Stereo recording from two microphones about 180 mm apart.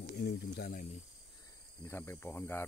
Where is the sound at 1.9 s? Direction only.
10° left (ahead or behind).